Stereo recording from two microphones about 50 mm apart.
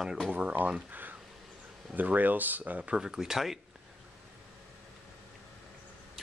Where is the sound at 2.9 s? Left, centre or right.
Centre.